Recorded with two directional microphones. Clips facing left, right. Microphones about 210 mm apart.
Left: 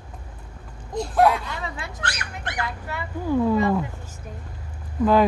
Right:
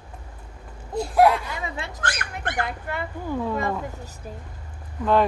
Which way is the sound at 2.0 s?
50° right (ahead or behind).